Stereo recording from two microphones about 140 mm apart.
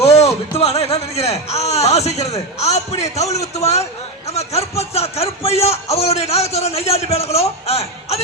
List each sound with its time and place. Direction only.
0.2 s a man's voice: 50° left (ahead or behind)